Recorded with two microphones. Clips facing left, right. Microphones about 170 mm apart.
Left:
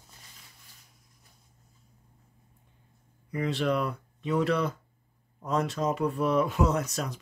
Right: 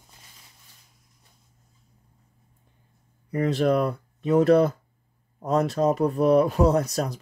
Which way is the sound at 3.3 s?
40° right (ahead or behind).